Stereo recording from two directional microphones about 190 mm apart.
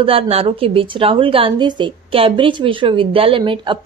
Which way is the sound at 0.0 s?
30° right (ahead or behind).